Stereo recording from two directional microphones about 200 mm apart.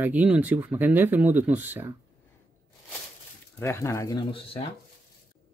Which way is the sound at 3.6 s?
15° left (ahead or behind).